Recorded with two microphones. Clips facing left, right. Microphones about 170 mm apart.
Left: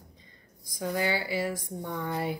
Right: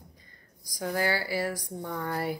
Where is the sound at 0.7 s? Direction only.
20° left (ahead or behind).